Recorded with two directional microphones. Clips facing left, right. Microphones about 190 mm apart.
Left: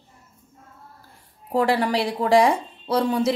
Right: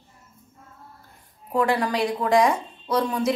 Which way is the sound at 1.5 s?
30° left (ahead or behind).